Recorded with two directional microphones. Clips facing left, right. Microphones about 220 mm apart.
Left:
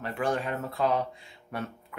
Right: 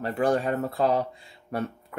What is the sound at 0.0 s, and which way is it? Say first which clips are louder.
Speech: right 5 dB; 35° right (ahead or behind).